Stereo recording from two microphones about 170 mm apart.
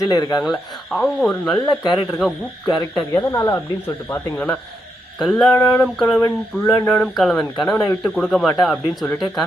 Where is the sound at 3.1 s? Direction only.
20° left (ahead or behind).